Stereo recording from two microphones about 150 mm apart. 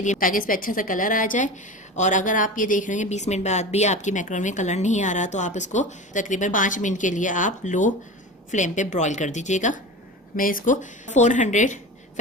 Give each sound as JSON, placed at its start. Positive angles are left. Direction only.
{"t": 0.0, "sound": "a woman's voice", "side_deg": 60}
{"t": 10.3, "sound": "a woman's voice", "side_deg": 65}